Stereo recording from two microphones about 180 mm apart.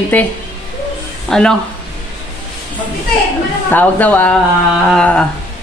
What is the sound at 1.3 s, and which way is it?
Speech, 5° left (ahead or behind).